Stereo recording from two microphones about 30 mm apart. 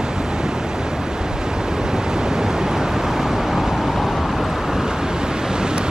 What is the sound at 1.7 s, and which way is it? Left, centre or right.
Vehicle, right.